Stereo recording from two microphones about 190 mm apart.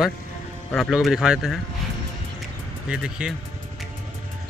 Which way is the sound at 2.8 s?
5° right (ahead or behind).